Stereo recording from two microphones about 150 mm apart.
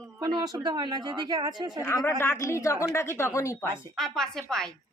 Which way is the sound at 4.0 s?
5° left (ahead or behind).